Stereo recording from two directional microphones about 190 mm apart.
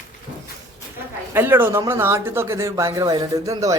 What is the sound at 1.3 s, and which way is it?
Speech, 10° right (ahead or behind).